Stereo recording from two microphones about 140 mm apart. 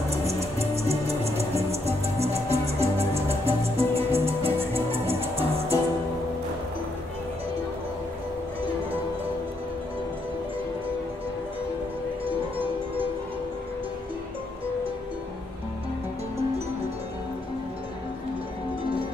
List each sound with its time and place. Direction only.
0.1 s music: 45° right (ahead or behind)